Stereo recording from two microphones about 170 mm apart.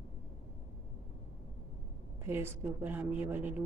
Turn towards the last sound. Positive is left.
turn(degrees=-10)  # may be behind; listen again after turning